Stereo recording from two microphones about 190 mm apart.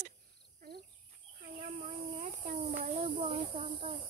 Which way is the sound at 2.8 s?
35° right (ahead or behind).